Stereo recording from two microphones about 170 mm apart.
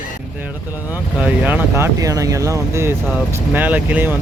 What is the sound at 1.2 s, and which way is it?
Speech, 10° right (ahead or behind).